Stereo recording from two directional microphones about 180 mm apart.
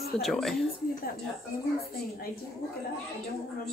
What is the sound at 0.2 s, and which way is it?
Speech, centre (ahead or behind).